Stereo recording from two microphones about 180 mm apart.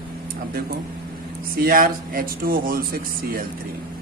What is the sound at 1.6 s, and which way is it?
Speech, 50° right (ahead or behind).